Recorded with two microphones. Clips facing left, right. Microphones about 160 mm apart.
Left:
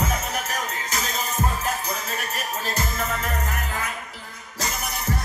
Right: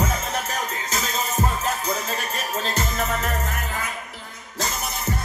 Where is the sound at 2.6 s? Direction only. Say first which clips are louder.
Right 2 dB; 25° right (ahead or behind).